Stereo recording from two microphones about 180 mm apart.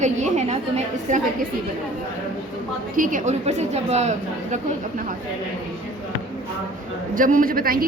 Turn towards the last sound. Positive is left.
turn(degrees=-55)  # may be behind; listen again after turning